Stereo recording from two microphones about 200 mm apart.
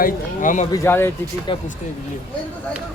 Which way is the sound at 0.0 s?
40° left (ahead or behind).